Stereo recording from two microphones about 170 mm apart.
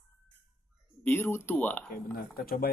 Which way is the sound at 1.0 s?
10° left (ahead or behind).